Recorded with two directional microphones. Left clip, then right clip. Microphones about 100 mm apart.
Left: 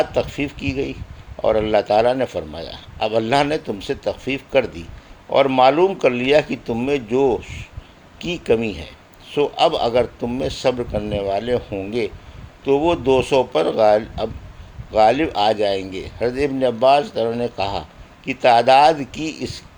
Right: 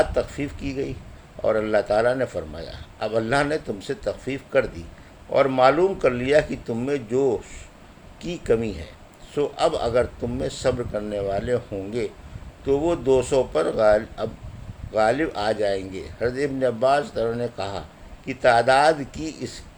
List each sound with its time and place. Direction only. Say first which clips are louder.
0.0 s a man's voice: left 3 dB; 40° left (ahead or behind)